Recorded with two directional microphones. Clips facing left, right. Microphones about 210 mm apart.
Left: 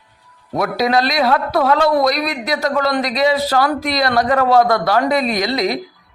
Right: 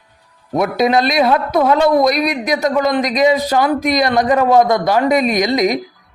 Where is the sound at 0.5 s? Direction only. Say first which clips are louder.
Right 3 dB; 20° right (ahead or behind).